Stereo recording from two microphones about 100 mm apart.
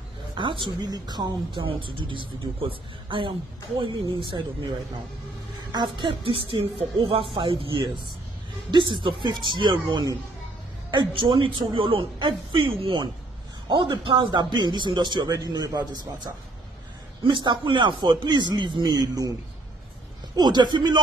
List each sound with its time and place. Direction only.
0.3 s a man's voice: 55° right (ahead or behind)
1.7 s speech: 60° right (ahead or behind)
5.7 s a man's voice: 45° right (ahead or behind)
6.0 s a man's voice: 65° right (ahead or behind); by 16.1 s 45° right (ahead or behind)
17.2 s a man's voice: 50° right (ahead or behind)
18.9 s a man's voice: 40° right (ahead or behind)
20.3 s a man's voice: 45° right (ahead or behind)